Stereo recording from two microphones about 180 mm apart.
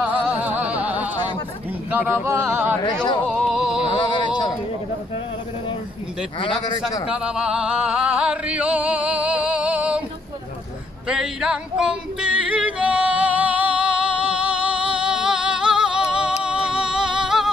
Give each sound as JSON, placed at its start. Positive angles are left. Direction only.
{"t": 0.0, "sound": "music", "side_deg": -5}
{"t": 1.9, "sound": "a sound", "side_deg": -10}
{"t": 3.3, "sound": "music", "side_deg": 0}
{"t": 3.9, "sound": "a sound", "side_deg": 25}
{"t": 7.1, "sound": "music", "side_deg": -5}
{"t": 11.1, "sound": "yodeling", "side_deg": -5}